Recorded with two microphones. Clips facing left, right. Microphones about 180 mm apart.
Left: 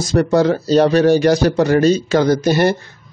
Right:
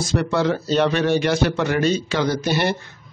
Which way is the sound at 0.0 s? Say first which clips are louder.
Left 6 dB; 40° left (ahead or behind).